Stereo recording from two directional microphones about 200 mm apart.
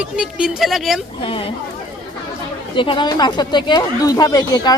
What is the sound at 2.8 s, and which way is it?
Speech, 25° left (ahead or behind).